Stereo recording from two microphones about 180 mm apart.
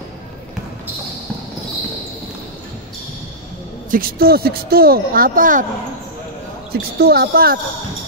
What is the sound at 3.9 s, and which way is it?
Speech, 55° right (ahead or behind).